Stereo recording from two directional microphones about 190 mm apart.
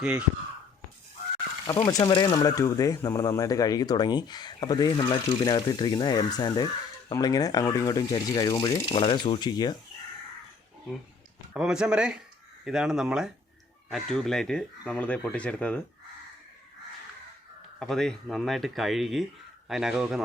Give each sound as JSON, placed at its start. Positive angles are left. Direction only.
{"t": 0.0, "sound": "speech", "side_deg": -5}
{"t": 1.6, "sound": "speech", "side_deg": 20}
{"t": 11.5, "sound": "speech", "side_deg": -5}
{"t": 17.7, "sound": "speech", "side_deg": 0}